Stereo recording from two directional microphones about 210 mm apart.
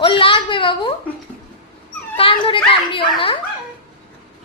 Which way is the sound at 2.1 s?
25° left (ahead or behind).